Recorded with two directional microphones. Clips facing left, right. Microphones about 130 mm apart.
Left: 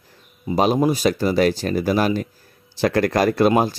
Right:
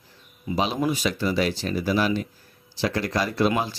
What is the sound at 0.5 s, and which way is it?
Speech, 45° left (ahead or behind).